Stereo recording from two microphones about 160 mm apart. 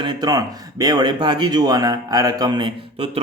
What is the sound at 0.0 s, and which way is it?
Speech, 25° right (ahead or behind).